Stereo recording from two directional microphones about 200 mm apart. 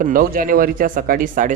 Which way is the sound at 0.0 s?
45° right (ahead or behind).